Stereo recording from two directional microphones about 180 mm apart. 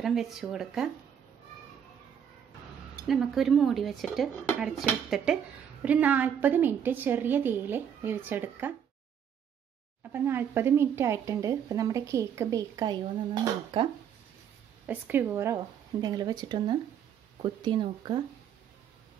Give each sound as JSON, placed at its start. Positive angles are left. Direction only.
{"t": 0.0, "sound": "speech", "side_deg": 0}
{"t": 3.1, "sound": "a woman's voice", "side_deg": 0}
{"t": 10.1, "sound": "a woman's voice", "side_deg": -10}
{"t": 14.9, "sound": "speech", "side_deg": -10}